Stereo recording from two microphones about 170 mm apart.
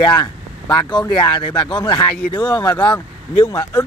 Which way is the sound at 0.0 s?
25° left (ahead or behind).